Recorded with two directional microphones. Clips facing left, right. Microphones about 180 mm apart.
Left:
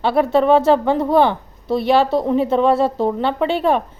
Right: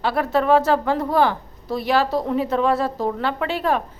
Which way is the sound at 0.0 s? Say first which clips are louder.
Left 5 dB; 25° left (ahead or behind).